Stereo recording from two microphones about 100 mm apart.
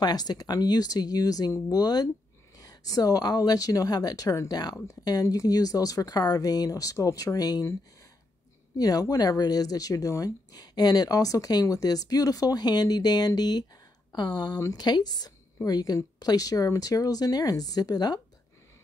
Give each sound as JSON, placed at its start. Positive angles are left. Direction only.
{"t": 0.0, "sound": "speech", "side_deg": 40}
{"t": 8.7, "sound": "speech", "side_deg": 40}